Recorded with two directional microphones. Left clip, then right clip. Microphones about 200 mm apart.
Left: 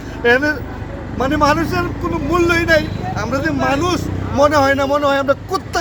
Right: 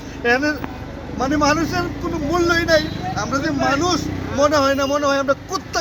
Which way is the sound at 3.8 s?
40° left (ahead or behind).